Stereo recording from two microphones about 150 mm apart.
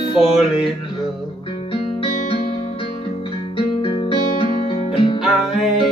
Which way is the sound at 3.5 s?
35° left (ahead or behind).